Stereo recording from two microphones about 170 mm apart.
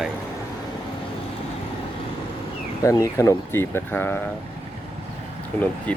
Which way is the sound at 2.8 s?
20° left (ahead or behind).